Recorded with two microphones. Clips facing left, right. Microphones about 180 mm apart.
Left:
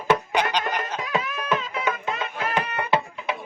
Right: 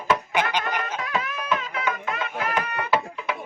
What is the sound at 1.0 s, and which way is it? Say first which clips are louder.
Laughter: left 1 dB; 20° left (ahead or behind).